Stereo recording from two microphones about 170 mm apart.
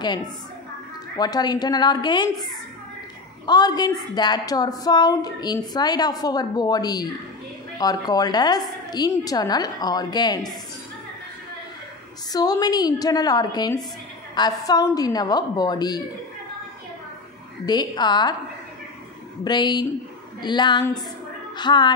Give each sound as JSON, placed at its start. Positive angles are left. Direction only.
{"t": 1.1, "sound": "a woman's voice", "side_deg": 25}
{"t": 12.3, "sound": "a woman's voice", "side_deg": 20}
{"t": 17.6, "sound": "a woman's voice", "side_deg": 25}
{"t": 19.4, "sound": "a woman's voice", "side_deg": 25}